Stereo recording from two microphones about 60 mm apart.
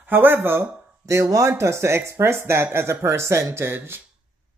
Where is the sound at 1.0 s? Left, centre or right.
Right.